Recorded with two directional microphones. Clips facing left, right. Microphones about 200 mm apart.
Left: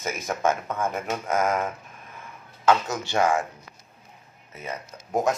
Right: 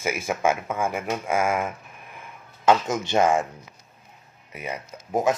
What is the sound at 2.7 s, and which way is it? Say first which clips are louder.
Speech: right 2 dB; 20° right (ahead or behind).